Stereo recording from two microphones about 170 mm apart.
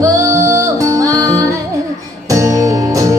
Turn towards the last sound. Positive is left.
turn(degrees=-20)  # may be behind; listen again after turning